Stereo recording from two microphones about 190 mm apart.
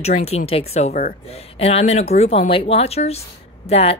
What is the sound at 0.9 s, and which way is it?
Speech, 50° left (ahead or behind).